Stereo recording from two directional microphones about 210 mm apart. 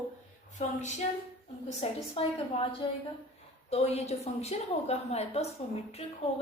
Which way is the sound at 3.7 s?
30° left (ahead or behind).